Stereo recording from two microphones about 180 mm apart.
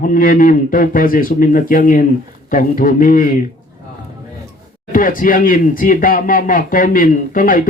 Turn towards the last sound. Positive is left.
turn(degrees=50)  # may be behind; listen again after turning